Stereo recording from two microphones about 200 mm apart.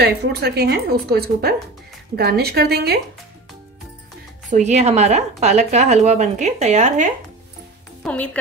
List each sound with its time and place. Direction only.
0.0 s a woman's voice: 50° right (ahead or behind)
4.5 s a woman's voice: 35° right (ahead or behind)
8.0 s speech: 5° left (ahead or behind)